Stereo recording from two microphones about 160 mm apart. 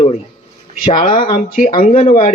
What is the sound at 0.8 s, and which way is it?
A man's voice, 55° left (ahead or behind).